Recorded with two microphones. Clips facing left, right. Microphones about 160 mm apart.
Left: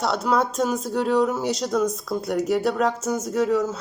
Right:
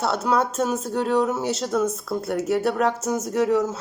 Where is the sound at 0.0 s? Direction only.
5° right (ahead or behind).